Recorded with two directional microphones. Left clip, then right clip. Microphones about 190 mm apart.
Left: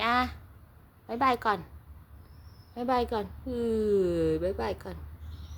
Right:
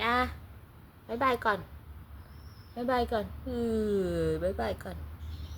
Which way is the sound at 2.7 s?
15° left (ahead or behind).